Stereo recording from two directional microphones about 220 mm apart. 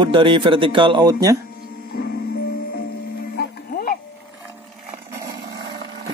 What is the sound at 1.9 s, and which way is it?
Music, 45° left (ahead or behind).